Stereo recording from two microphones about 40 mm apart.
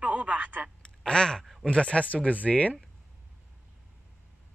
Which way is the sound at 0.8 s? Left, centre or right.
Left.